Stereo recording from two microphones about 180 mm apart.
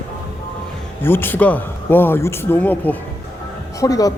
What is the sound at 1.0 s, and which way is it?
A man's voice, 10° left (ahead or behind).